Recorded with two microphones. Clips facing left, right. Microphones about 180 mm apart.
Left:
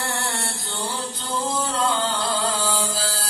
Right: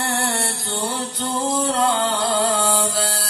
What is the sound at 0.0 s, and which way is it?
Music, 65° right (ahead or behind).